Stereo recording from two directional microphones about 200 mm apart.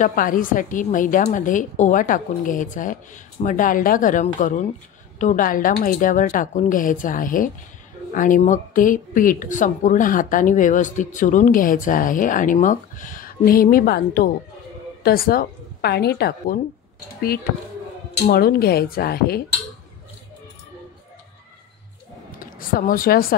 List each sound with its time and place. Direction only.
0.0 s a woman's voice: 45° left (ahead or behind)
18.2 s a woman's voice: 50° left (ahead or behind)
22.4 s speech: 45° left (ahead or behind)